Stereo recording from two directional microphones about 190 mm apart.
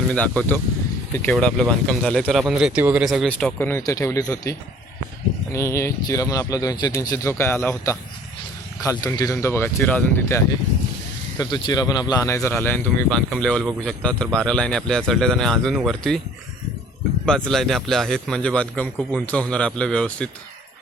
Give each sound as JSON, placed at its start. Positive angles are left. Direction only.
{"t": 0.1, "sound": "speech", "side_deg": 5}
{"t": 11.3, "sound": "speech", "side_deg": 20}
{"t": 17.2, "sound": "speech", "side_deg": 5}